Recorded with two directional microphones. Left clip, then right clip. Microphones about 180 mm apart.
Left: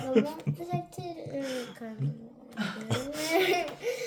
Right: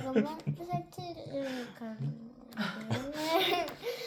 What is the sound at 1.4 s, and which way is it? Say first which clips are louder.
Speech: left 3 dB; 35° left (ahead or behind).